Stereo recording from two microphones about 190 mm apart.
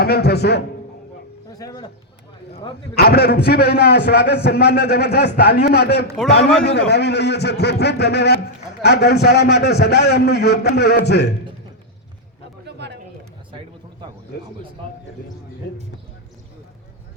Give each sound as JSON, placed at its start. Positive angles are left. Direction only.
{"t": 0.0, "sound": "a man's voice", "side_deg": 55}
{"t": 1.5, "sound": "a sound", "side_deg": 20}
{"t": 2.9, "sound": "a man's voice", "side_deg": 55}
{"t": 12.6, "sound": "pigeon", "side_deg": -65}